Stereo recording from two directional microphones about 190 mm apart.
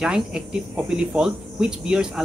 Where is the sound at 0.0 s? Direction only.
5° right (ahead or behind).